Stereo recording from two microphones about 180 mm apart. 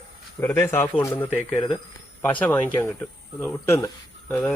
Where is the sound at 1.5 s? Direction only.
30° left (ahead or behind).